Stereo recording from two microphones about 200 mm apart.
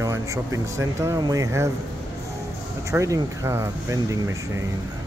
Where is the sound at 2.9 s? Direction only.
15° right (ahead or behind).